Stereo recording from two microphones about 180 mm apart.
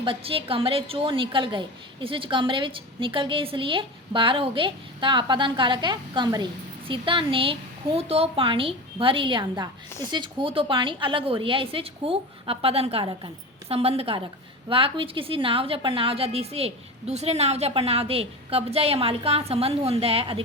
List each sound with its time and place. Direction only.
0.0 s a woman's voice: 30° right (ahead or behind)